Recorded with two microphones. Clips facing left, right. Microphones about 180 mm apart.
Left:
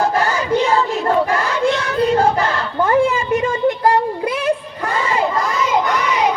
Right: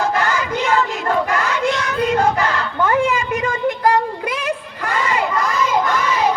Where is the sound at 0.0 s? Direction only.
30° left (ahead or behind).